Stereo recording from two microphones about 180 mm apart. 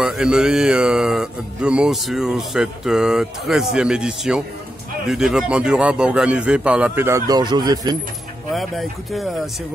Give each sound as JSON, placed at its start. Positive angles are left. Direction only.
{"t": 0.0, "sound": "mantra", "side_deg": -5}
{"t": 5.0, "sound": "a man's voice", "side_deg": 0}
{"t": 8.5, "sound": "mantra", "side_deg": 0}